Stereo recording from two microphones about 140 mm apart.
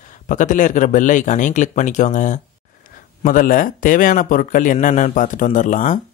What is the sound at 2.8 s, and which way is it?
Speech, 85° left.